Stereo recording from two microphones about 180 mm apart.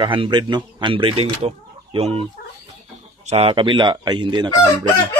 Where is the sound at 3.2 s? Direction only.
30° right (ahead or behind).